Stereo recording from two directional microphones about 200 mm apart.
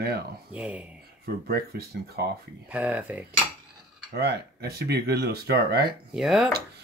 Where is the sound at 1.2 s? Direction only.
50° right (ahead or behind).